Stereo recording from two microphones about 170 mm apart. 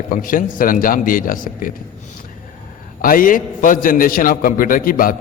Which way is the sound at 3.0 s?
55° left (ahead or behind).